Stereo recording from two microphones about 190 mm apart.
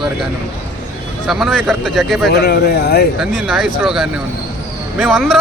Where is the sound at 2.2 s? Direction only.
60° left (ahead or behind).